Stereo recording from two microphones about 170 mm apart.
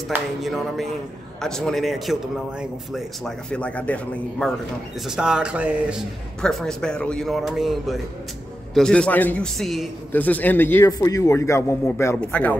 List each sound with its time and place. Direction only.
0.4 s a man's voice: centre (ahead or behind)
5.0 s speech: 5° right (ahead or behind)
6.4 s a man's voice: 5° left (ahead or behind)